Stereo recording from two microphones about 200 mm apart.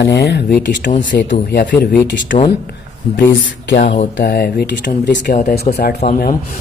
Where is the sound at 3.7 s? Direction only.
35° left (ahead or behind).